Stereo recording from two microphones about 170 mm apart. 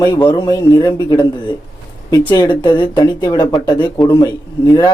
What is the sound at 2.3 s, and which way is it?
A man's voice, 25° left (ahead or behind).